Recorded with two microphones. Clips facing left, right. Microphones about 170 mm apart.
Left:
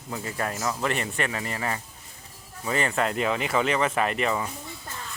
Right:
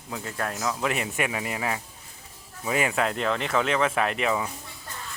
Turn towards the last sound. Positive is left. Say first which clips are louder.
# even
turn(degrees=0)  # may be behind; listen again after turning